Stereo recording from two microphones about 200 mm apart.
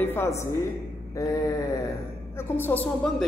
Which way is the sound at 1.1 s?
15° left (ahead or behind).